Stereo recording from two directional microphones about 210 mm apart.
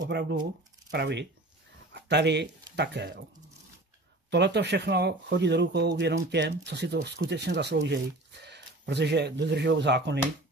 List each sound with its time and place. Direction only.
0.0 s speech: 55° right (ahead or behind)
4.3 s speech: 55° right (ahead or behind)